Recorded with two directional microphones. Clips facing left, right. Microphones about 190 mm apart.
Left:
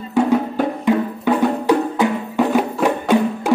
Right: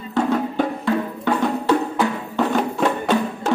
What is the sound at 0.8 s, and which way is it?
Music, 15° left (ahead or behind).